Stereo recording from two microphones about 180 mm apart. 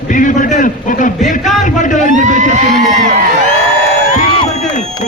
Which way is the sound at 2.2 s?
40° right (ahead or behind).